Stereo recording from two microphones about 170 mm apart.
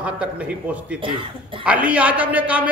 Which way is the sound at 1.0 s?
30° right (ahead or behind).